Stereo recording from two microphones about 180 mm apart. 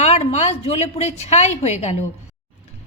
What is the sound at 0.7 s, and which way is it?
A woman's voice, 35° left (ahead or behind).